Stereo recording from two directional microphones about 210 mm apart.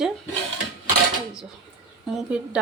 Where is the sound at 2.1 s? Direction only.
5° right (ahead or behind).